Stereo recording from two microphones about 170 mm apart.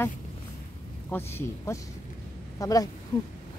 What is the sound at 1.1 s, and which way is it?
Speech, 15° left (ahead or behind).